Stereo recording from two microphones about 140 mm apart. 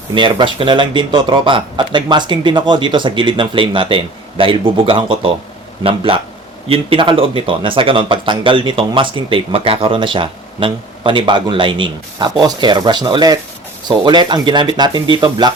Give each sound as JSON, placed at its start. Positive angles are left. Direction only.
{"t": 0.1, "sound": "speech", "side_deg": -35}